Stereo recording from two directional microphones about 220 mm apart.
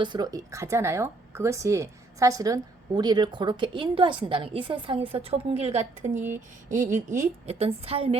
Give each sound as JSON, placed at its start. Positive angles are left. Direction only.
{"t": 0.0, "sound": "a woman's voice", "side_deg": -20}